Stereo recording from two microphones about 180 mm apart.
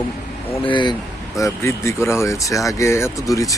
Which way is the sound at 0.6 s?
25° left (ahead or behind).